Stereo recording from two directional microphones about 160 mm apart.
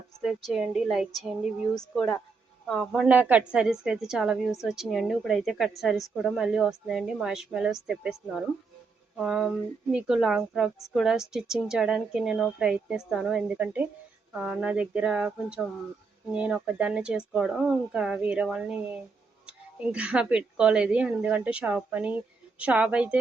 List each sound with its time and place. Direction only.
0.2 s a woman's voice: centre (ahead or behind)